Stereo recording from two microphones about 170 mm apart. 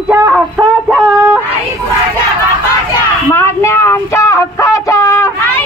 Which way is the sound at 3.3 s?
15° left (ahead or behind).